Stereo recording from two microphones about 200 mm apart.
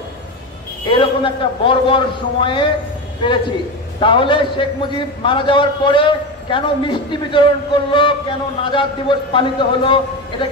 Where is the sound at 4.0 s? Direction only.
25° left (ahead or behind).